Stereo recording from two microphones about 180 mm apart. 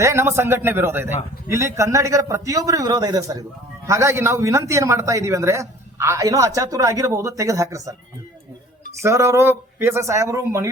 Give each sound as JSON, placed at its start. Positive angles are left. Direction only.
{"t": 0.0, "sound": "speech", "side_deg": -15}
{"t": 9.0, "sound": "speech", "side_deg": -15}